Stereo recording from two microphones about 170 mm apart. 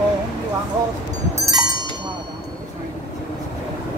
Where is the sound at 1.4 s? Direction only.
20° right (ahead or behind).